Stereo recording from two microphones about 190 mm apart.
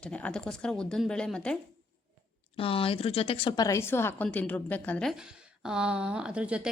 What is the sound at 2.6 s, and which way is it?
A woman's voice, 30° left (ahead or behind).